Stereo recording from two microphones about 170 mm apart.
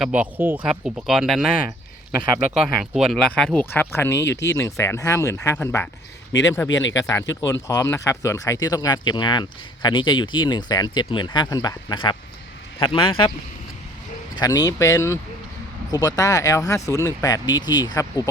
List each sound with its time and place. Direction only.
0.0 s a man's voice: 10° right (ahead or behind); by 13.3 s 30° left (ahead or behind)
14.3 s speech: 20° left (ahead or behind)